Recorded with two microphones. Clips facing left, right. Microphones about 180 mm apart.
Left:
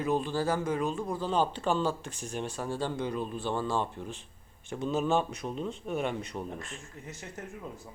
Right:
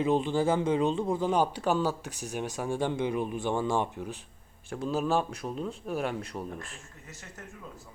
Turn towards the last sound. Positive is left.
turn(degrees=0)  # may be behind; listen again after turning